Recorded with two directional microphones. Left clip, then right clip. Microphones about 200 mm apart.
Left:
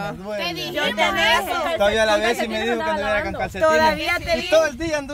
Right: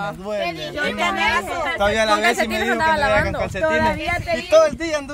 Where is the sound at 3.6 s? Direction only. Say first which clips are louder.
Left 3 dB; 65° left (ahead or behind).